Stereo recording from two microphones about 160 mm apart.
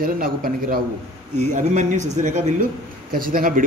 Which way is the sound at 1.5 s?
50° right (ahead or behind).